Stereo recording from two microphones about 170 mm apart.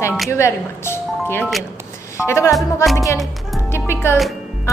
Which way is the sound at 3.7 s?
15° left (ahead or behind).